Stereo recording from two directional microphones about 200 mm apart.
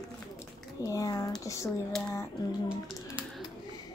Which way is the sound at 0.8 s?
15° left (ahead or behind).